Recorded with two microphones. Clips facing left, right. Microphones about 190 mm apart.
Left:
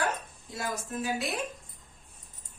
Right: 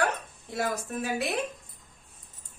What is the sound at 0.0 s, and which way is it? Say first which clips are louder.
Dog: right 3 dB; 65° right (ahead or behind).